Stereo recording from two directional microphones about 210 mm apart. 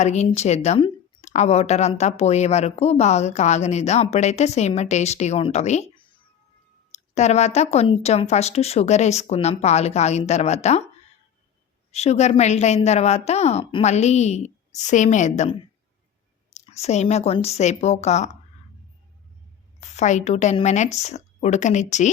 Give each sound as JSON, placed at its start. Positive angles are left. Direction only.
{"t": 0.0, "sound": "speech", "side_deg": 30}
{"t": 11.9, "sound": "speech", "side_deg": 30}
{"t": 16.6, "sound": "speech", "side_deg": 30}
{"t": 19.8, "sound": "speech", "side_deg": 35}